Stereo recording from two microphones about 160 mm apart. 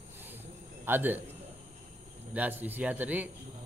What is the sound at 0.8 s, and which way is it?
Speech, 10° right (ahead or behind).